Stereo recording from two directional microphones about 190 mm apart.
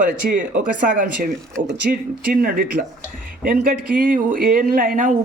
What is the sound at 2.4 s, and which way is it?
Speech, 50° right (ahead or behind).